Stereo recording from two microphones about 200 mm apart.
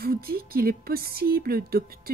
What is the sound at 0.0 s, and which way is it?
Speech, 50° right (ahead or behind).